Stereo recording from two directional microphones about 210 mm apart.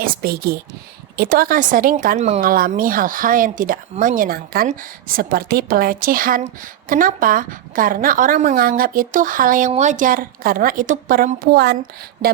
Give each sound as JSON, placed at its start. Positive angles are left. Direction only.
{"t": 0.0, "sound": "speech", "side_deg": -45}